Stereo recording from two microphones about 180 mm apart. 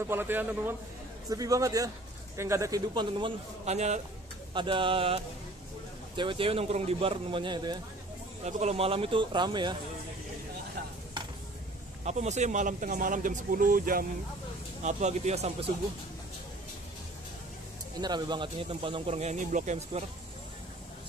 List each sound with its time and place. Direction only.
0.0 s a man's voice: 10° right (ahead or behind)
3.6 s a man's voice: 40° right (ahead or behind)
4.6 s a man's voice: 30° right (ahead or behind)
8.5 s a man's voice: 40° right (ahead or behind)
12.0 s speech: 40° right (ahead or behind)
14.8 s a man's voice: 40° right (ahead or behind)
18.0 s a man's voice: 25° right (ahead or behind)